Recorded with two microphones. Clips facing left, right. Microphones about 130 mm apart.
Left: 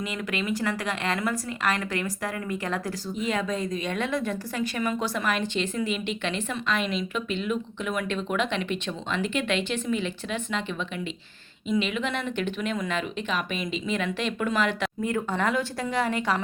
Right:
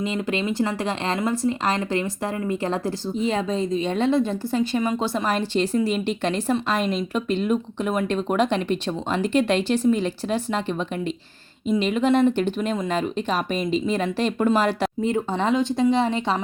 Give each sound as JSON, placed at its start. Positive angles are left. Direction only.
{"t": 0.0, "sound": "a woman's voice", "side_deg": -30}
{"t": 11.8, "sound": "speech", "side_deg": -40}
{"t": 15.0, "sound": "a woman's voice", "side_deg": -25}